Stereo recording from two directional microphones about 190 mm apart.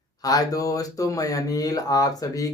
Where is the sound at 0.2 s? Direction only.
20° left (ahead or behind).